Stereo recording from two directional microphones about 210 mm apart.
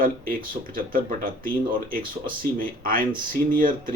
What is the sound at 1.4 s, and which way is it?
Speech, 45° right (ahead or behind).